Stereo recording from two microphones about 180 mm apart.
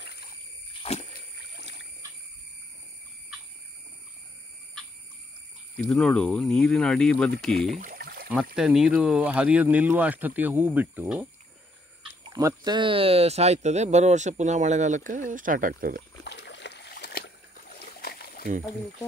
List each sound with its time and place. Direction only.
0.0 s a sound: 60° left (ahead or behind)
0.8 s rowboat: 30° left (ahead or behind)
1.6 s trickle: 85° left
5.8 s speech: centre (ahead or behind)
7.8 s a sound: 55° right (ahead or behind)
8.5 s speech: 5° right (ahead or behind)
12.3 s speech: 20° right (ahead or behind); by 16.0 s 50° right (ahead or behind)
16.3 s boat: 75° left (ahead or behind); by 17.8 s 60° left (ahead or behind)
17.8 s a sound: 60° left (ahead or behind)